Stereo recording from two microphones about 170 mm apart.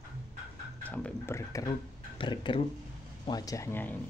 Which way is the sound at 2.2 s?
30° left (ahead or behind).